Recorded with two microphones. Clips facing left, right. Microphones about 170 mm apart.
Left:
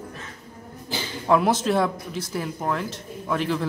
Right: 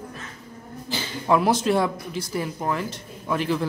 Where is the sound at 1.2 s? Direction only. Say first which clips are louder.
Even; centre (ahead or behind).